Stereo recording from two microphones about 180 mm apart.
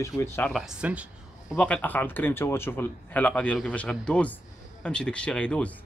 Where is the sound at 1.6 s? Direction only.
10° left (ahead or behind).